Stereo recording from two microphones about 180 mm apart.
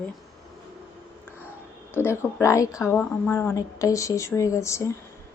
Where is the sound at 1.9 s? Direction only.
15° left (ahead or behind).